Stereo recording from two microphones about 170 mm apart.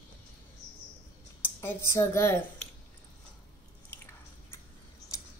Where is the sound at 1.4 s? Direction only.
15° left (ahead or behind).